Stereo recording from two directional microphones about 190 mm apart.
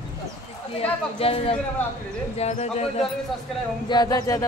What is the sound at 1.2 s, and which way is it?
Speech, 30° left (ahead or behind).